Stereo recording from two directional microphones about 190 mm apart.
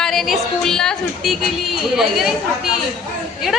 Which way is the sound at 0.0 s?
Centre (ahead or behind).